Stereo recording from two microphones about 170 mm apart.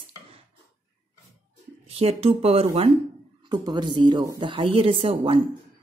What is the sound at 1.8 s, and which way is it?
Speech, 35° right (ahead or behind).